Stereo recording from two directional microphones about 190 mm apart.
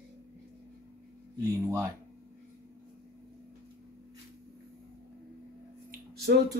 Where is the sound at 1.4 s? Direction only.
15° right (ahead or behind).